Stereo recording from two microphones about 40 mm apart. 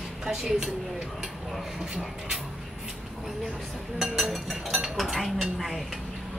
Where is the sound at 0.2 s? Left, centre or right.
Centre.